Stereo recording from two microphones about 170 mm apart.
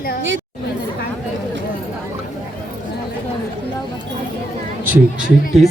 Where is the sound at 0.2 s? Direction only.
90° right.